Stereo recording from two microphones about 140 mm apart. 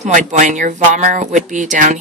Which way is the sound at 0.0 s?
60° right (ahead or behind).